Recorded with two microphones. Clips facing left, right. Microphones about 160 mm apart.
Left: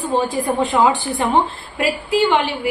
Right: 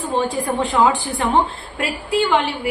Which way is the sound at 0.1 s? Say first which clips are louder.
Left 1 dB; 35° left (ahead or behind).